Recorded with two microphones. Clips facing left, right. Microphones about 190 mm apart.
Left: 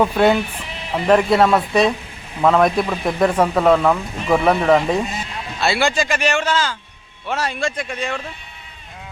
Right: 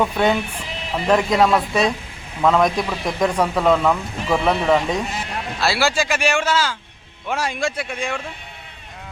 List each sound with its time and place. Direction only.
0.0 s a man's voice: 10° left (ahead or behind); by 8.2 s 10° right (ahead or behind)